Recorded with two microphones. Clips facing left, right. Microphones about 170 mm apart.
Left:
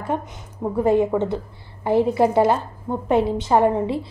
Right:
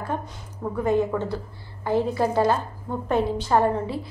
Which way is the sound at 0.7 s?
25° left (ahead or behind).